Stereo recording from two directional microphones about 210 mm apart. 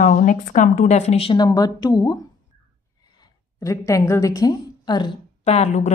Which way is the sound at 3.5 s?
15° left (ahead or behind).